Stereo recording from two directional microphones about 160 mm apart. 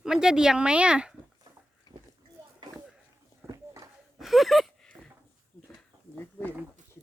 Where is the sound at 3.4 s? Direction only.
20° right (ahead or behind).